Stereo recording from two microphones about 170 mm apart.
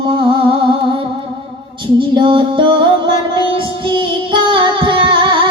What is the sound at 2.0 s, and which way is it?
Music, 30° right (ahead or behind).